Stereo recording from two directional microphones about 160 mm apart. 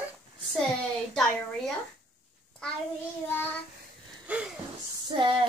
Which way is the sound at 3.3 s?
15° left (ahead or behind).